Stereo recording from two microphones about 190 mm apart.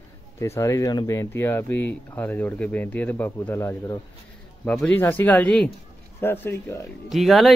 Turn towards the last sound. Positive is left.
turn(degrees=0)  # may be behind; listen again after turning